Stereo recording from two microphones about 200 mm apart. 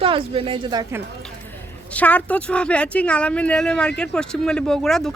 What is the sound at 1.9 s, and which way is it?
Speech, 5° left (ahead or behind).